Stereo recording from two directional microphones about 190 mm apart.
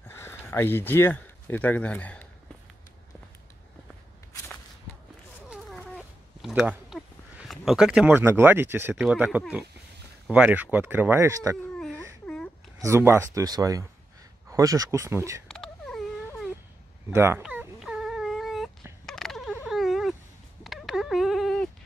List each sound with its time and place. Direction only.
0.1 s speech: 10° left (ahead or behind)
5.5 s cat: centre (ahead or behind)
10.3 s speech: 10° right (ahead or behind)
12.7 s speech: 15° right (ahead or behind)
15.4 s a sound: 5° left (ahead or behind)
17.1 s dog: 15° right (ahead or behind)
19.0 s a sound: centre (ahead or behind)